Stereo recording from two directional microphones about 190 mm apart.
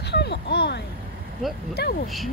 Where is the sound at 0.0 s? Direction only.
65° left (ahead or behind).